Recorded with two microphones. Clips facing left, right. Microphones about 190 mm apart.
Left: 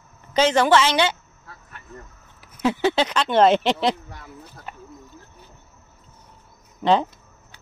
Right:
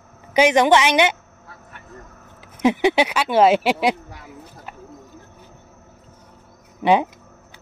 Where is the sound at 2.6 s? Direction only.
15° right (ahead or behind).